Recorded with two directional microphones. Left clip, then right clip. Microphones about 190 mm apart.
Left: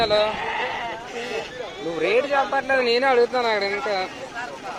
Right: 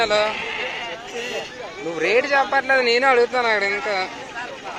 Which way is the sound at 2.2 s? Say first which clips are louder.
Right 3 dB; 10° right (ahead or behind).